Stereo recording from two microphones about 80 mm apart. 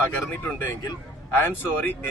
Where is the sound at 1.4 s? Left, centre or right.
Left.